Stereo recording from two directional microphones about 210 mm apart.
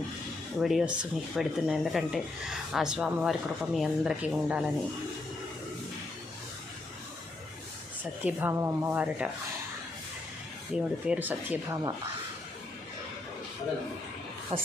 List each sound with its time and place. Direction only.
0.6 s speech: centre (ahead or behind)
8.2 s speech: 10° right (ahead or behind)
11.0 s speech: 5° right (ahead or behind)
14.5 s speech: 30° right (ahead or behind)